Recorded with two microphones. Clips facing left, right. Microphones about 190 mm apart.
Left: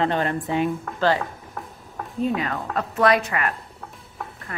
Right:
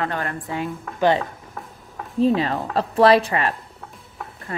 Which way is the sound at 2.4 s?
30° right (ahead or behind).